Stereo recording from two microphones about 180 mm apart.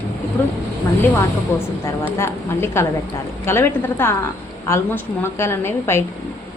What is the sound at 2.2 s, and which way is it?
A woman's voice, 15° left (ahead or behind).